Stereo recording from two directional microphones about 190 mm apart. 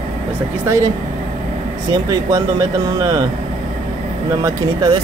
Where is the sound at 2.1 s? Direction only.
20° right (ahead or behind).